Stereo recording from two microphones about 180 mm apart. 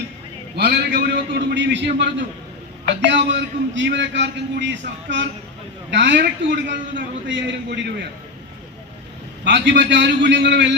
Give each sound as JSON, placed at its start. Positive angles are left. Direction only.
{"t": 0.5, "sound": "a man's voice", "side_deg": -70}
{"t": 9.4, "sound": "a man's voice", "side_deg": -75}